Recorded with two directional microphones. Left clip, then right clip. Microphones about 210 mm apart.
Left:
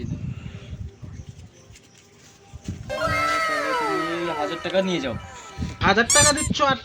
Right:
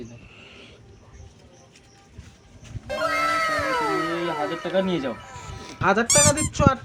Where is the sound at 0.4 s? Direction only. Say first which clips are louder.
Left 1 dB; 10° right (ahead or behind).